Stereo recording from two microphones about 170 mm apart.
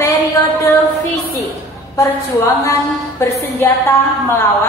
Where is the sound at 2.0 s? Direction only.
15° left (ahead or behind).